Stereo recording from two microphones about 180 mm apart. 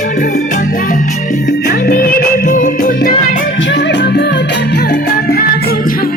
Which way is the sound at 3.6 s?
80° left.